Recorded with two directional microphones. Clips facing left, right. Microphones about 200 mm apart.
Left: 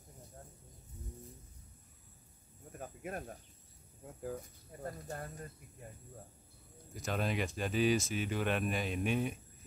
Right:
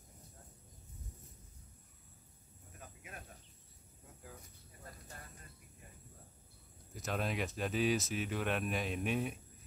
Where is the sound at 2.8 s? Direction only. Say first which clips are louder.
Left 11 dB; 50° left (ahead or behind).